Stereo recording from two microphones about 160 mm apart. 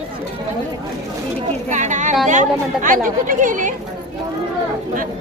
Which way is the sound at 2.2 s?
50° right (ahead or behind).